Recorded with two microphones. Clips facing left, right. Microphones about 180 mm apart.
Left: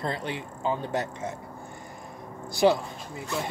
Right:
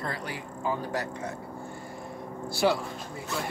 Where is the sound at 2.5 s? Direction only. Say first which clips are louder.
Left 4 dB; 20° left (ahead or behind).